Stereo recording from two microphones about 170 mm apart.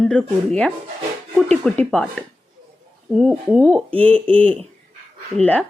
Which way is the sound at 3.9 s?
10° left (ahead or behind).